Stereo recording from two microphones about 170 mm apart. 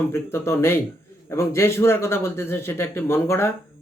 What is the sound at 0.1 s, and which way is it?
Speech, 15° left (ahead or behind).